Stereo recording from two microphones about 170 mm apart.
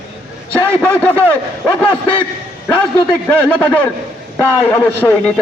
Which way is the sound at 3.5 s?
10° left (ahead or behind).